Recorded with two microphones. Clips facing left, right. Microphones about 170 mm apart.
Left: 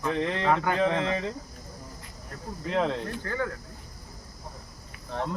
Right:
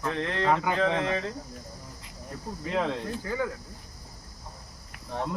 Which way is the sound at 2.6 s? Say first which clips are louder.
Left 2 dB; centre (ahead or behind).